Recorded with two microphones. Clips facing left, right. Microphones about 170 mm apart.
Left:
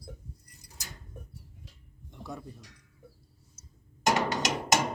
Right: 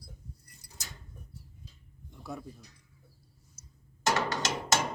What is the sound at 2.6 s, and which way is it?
Speech, 90° left.